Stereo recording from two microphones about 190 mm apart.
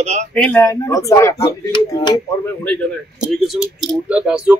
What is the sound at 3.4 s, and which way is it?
Speech, centre (ahead or behind).